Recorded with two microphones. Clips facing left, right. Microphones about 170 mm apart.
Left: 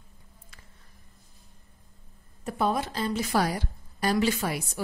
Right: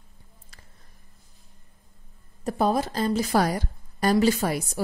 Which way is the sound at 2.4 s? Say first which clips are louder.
Right 4 dB; 40° right (ahead or behind).